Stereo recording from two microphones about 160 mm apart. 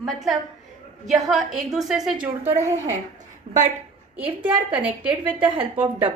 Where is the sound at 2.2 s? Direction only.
40° right (ahead or behind).